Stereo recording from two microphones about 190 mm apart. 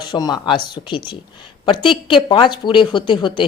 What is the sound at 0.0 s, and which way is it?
Speech, 20° left (ahead or behind).